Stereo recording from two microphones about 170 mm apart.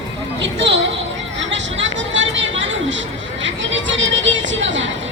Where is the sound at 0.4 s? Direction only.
90° right.